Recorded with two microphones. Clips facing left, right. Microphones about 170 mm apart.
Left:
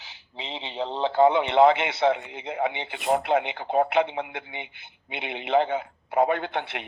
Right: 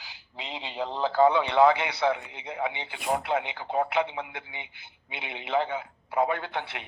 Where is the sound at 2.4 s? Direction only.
50° left (ahead or behind).